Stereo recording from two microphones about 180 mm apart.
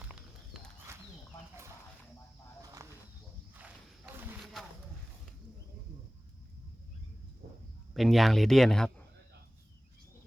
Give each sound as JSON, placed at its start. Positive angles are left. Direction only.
{"t": 0.0, "sound": "clip-clop", "side_deg": -5}
{"t": 0.9, "sound": "a sound", "side_deg": -15}
{"t": 3.5, "sound": "walk", "side_deg": -10}
{"t": 7.9, "sound": "speech", "side_deg": 0}